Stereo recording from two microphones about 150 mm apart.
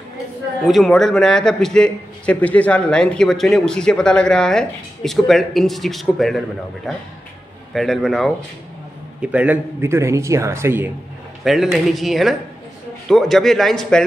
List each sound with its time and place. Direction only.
0.7 s a man's voice: centre (ahead or behind)
7.7 s a man's voice: 5° left (ahead or behind)
9.2 s a man's voice: 10° right (ahead or behind)
11.4 s a man's voice: centre (ahead or behind)